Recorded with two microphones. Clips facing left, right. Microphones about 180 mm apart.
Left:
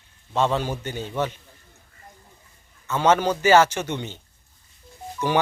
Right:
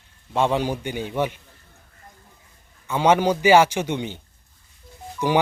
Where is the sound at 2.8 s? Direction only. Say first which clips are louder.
Right 2 dB; 15° right (ahead or behind).